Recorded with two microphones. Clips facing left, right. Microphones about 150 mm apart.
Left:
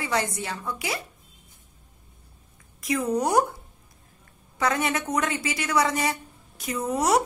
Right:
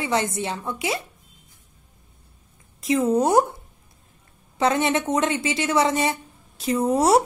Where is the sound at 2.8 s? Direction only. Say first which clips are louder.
Right 5 dB; 25° right (ahead or behind).